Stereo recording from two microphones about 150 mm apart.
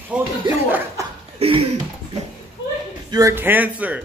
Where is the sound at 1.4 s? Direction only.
40° right (ahead or behind).